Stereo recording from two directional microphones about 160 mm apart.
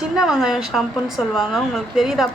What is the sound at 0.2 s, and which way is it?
A woman's voice, 5° right (ahead or behind).